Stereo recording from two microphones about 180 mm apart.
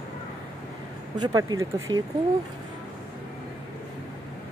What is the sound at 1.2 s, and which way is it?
Speech, 20° right (ahead or behind).